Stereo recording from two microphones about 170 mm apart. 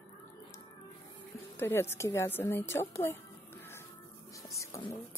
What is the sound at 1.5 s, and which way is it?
Speech, 15° left (ahead or behind).